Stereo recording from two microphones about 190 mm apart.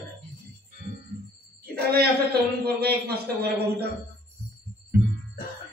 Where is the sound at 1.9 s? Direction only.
55° right (ahead or behind).